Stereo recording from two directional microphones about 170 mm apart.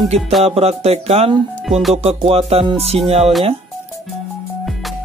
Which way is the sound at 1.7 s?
Centre (ahead or behind).